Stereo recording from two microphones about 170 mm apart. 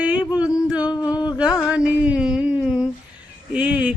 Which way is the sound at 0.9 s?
20° left (ahead or behind).